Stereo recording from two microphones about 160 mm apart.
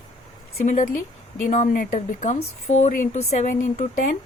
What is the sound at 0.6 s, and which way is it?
Speech, 50° left (ahead or behind).